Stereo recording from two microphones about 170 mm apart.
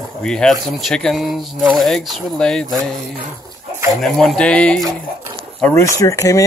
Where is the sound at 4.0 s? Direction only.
Centre (ahead or behind).